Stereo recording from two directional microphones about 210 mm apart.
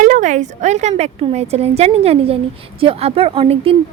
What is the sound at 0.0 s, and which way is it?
A woman's voice, 35° right (ahead or behind).